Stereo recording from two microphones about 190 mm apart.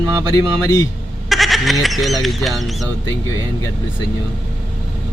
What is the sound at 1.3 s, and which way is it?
Goat, centre (ahead or behind).